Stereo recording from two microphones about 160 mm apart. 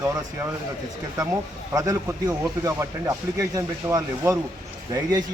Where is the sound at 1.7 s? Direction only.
20° right (ahead or behind).